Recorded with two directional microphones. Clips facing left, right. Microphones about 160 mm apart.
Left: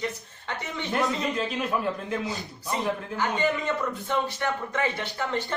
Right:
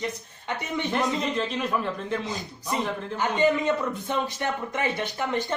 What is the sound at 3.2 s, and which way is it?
A man's voice, 20° right (ahead or behind).